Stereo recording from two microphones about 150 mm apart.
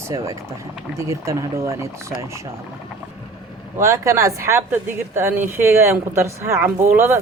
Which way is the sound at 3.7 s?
20° right (ahead or behind).